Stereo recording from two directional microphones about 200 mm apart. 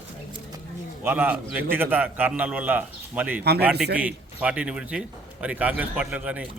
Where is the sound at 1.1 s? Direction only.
10° right (ahead or behind).